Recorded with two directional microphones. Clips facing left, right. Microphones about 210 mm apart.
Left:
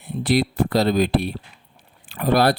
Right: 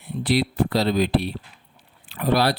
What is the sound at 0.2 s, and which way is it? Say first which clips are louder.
Speech: left 2 dB; 45° left (ahead or behind).